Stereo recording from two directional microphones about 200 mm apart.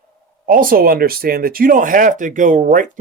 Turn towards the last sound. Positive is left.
turn(degrees=-40)  # may be behind; listen again after turning